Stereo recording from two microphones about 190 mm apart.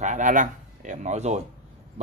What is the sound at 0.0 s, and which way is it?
Speech, 40° right (ahead or behind).